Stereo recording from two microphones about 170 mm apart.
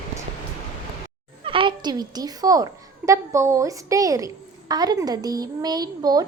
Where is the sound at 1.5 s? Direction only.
30° right (ahead or behind).